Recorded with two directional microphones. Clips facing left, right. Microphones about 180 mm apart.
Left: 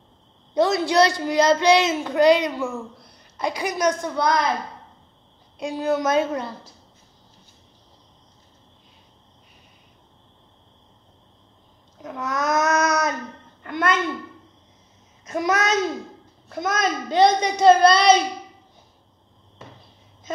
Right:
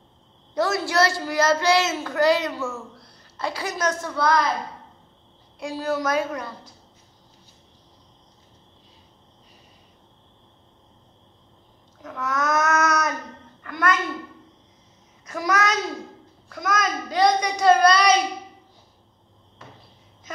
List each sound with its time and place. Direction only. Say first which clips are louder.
0.6 s a child's voice: left 4 dB; 20° left (ahead or behind)
5.6 s a child's voice: left 3 dB; 20° left (ahead or behind)
12.0 s babbling: left 1 dB; 20° left (ahead or behind)
13.6 s a sound: left 1 dB; 25° left (ahead or behind)
15.2 s a child's voice: left 2 dB; 25° left (ahead or behind)